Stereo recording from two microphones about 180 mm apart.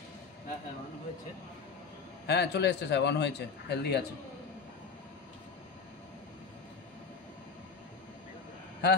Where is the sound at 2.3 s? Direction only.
70° left (ahead or behind).